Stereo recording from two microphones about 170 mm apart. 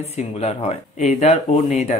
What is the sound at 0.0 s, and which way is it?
Speech, 40° left (ahead or behind).